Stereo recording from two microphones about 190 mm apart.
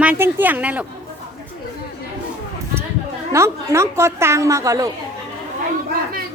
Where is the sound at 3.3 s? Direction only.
15° right (ahead or behind).